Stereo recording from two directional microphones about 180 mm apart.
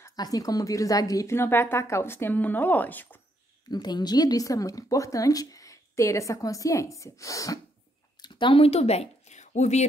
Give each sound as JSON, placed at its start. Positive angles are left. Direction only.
{"t": 0.0, "sound": "a woman's voice", "side_deg": 20}
{"t": 3.7, "sound": "speech", "side_deg": 25}